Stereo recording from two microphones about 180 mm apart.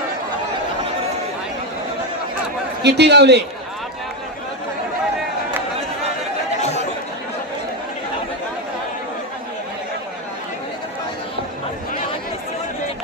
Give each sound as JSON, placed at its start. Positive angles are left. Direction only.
{"t": 2.8, "sound": "a man's voice", "side_deg": -70}
{"t": 6.6, "sound": "chatter", "side_deg": 40}